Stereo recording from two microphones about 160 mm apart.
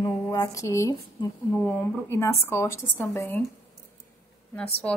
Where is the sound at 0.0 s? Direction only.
20° left (ahead or behind).